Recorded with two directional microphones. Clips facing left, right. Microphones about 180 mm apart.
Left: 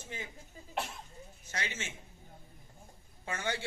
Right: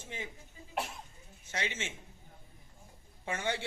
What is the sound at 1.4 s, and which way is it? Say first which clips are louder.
Speech: right 3 dB; 25° right (ahead or behind).